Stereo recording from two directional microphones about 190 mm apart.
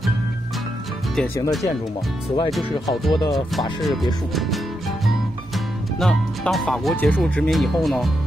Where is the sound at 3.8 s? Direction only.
Centre (ahead or behind).